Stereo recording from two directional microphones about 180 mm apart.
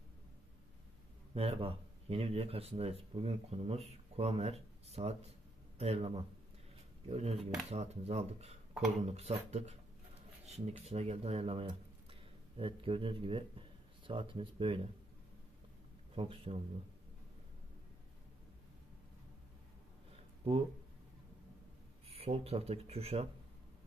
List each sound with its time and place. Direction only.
1.3 s speech: 35° right (ahead or behind)
10.9 s speech: 35° right (ahead or behind)
16.2 s a man's voice: 30° right (ahead or behind)
22.0 s speech: 35° right (ahead or behind)